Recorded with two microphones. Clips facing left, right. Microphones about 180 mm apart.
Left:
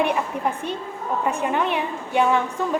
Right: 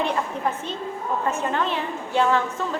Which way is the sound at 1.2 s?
15° left (ahead or behind).